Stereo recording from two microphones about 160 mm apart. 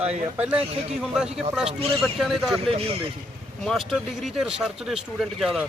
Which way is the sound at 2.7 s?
40° right (ahead or behind).